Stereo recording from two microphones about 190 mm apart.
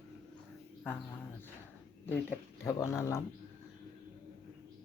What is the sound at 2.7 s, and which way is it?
Speech, 15° left (ahead or behind).